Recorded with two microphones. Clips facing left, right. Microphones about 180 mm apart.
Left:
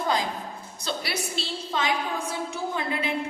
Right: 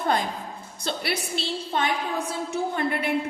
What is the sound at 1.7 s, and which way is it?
A woman's voice, 60° right (ahead or behind).